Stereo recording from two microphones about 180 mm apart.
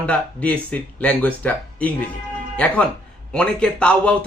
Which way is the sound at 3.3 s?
5° left (ahead or behind).